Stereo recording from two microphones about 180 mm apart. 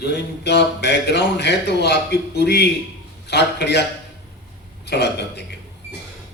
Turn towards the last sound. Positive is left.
turn(degrees=65)  # may be behind; listen again after turning